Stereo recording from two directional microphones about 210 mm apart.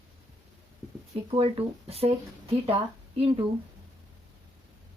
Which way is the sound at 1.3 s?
25° right (ahead or behind).